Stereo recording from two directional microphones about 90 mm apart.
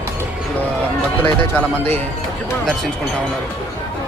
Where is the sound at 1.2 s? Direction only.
20° left (ahead or behind).